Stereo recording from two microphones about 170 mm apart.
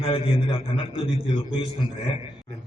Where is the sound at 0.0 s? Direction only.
35° left (ahead or behind).